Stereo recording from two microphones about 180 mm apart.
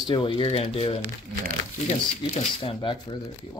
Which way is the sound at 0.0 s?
25° left (ahead or behind).